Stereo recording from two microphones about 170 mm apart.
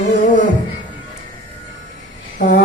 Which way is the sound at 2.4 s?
50° left (ahead or behind).